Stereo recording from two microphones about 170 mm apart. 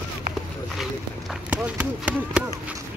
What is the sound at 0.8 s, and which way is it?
Speech, 5° right (ahead or behind).